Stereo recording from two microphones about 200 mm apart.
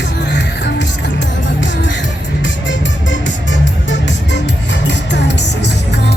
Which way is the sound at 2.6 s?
65° left (ahead or behind).